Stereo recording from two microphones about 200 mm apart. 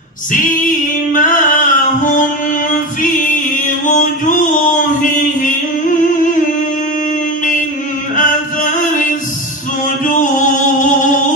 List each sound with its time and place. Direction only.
0.3 s singing: 40° left (ahead or behind)
2.7 s choir: 40° left (ahead or behind)
3.8 s a sound: 40° left (ahead or behind)
8.2 s music: 40° left (ahead or behind)
10.0 s music: 40° left (ahead or behind)